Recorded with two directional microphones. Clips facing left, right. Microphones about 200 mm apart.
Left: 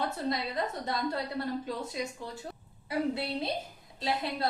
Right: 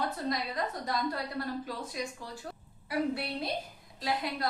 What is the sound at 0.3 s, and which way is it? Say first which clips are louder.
Speech: left 1 dB; 25° left (ahead or behind).